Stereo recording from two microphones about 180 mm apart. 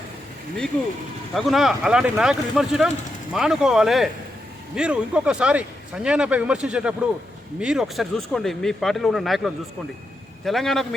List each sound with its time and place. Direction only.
1.3 s speech: centre (ahead or behind)